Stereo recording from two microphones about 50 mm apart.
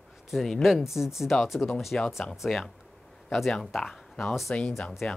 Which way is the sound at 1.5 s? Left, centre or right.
Centre.